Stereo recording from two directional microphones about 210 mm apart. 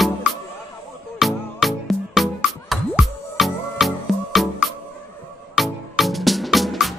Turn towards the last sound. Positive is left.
turn(degrees=0)  # may be behind; listen again after turning